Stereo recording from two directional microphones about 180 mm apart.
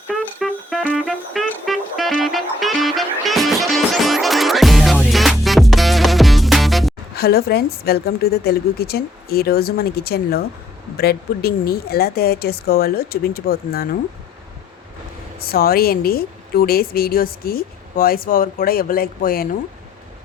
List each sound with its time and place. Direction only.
0.1 s music: centre (ahead or behind)
7.2 s a woman's voice: 60° left (ahead or behind)
15.4 s a woman's voice: 55° left (ahead or behind)